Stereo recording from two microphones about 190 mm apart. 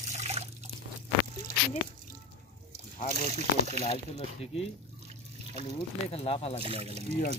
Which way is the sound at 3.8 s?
35° left (ahead or behind).